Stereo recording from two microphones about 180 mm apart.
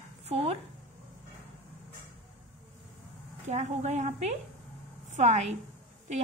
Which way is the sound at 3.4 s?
40° right (ahead or behind).